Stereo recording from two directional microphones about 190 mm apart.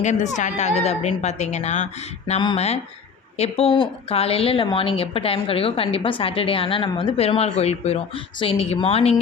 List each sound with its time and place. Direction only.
0.0 s a woman's voice: 40° left (ahead or behind)